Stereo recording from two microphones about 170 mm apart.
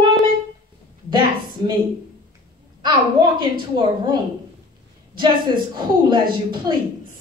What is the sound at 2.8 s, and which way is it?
A woman's voice, 30° right (ahead or behind).